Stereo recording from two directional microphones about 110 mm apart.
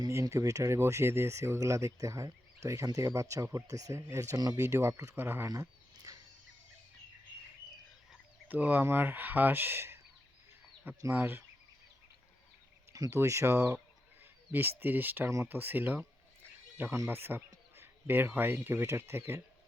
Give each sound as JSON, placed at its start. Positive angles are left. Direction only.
{"t": 0.0, "sound": "speech", "side_deg": -30}
{"t": 5.5, "sound": "a sound", "side_deg": -30}
{"t": 8.4, "sound": "speech", "side_deg": -15}
{"t": 11.1, "sound": "speech", "side_deg": -20}
{"t": 12.9, "sound": "speech", "side_deg": -30}